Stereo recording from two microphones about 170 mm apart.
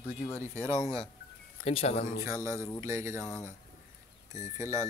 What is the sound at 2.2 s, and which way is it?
A man's voice, 15° right (ahead or behind).